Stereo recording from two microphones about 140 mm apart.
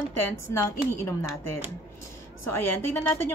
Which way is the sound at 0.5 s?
20° left (ahead or behind).